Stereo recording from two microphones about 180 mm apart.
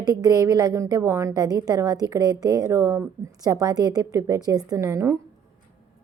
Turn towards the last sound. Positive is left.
turn(degrees=-15)  # may be behind; listen again after turning